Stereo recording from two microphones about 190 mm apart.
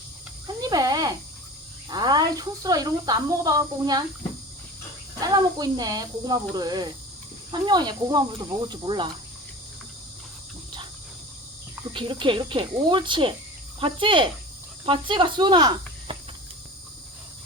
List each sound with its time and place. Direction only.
0.4 s a sound: 20° right (ahead or behind)
1.9 s speech: 20° right (ahead or behind)
5.2 s speech: 20° right (ahead or behind)
11.9 s speech: 25° right (ahead or behind)